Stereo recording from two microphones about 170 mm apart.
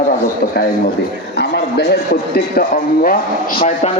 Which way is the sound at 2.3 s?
60° left (ahead or behind).